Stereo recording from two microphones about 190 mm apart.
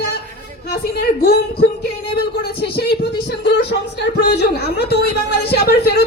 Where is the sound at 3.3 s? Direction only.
60° left (ahead or behind).